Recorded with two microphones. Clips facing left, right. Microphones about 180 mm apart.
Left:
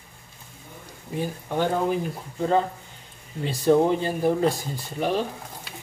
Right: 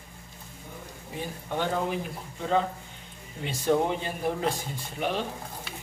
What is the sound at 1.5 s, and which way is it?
Speech, 40° left (ahead or behind).